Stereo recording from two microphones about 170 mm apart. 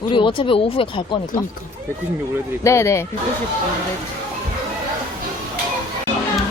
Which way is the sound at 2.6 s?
15° left (ahead or behind).